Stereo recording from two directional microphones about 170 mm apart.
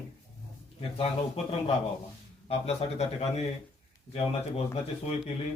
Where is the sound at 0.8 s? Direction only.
35° left (ahead or behind).